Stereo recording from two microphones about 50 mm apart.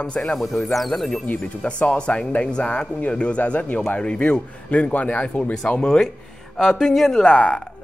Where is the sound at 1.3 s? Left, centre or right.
Left.